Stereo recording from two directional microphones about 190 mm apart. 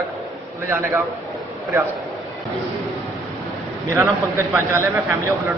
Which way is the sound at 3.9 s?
15° right (ahead or behind).